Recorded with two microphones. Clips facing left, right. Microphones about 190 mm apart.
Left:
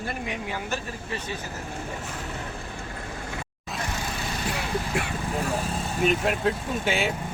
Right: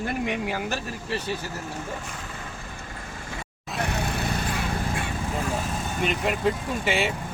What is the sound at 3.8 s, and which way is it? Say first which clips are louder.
Vehicle: right 5 dB; 65° right (ahead or behind).